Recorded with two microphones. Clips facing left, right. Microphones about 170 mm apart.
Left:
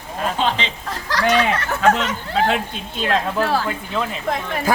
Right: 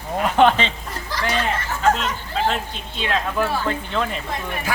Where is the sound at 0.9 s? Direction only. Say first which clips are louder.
Left 6 dB; 90° left; by 2.6 s 70° left (ahead or behind).